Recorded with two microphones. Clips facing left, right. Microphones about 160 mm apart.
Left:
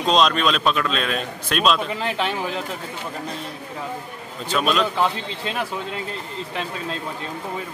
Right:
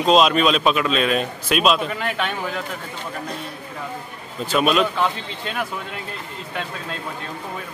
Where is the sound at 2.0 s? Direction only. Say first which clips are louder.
Left 1 dB; 30° left (ahead or behind).